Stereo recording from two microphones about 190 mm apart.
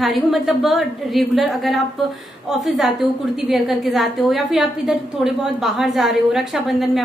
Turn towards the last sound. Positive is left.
turn(degrees=0)  # may be behind; listen again after turning